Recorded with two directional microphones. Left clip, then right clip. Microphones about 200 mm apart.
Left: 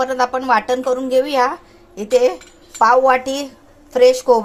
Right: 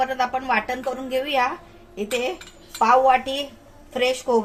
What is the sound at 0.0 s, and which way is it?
Speech, 35° left (ahead or behind).